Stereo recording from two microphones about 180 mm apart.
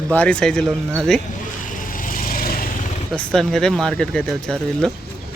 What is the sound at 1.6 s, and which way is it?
Vehicle, 50° left (ahead or behind).